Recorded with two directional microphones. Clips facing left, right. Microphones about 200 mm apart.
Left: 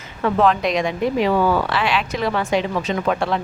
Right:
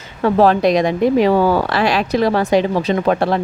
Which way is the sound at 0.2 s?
35° right (ahead or behind).